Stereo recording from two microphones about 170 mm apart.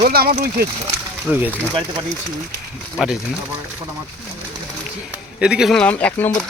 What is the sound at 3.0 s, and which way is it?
Speech, centre (ahead or behind).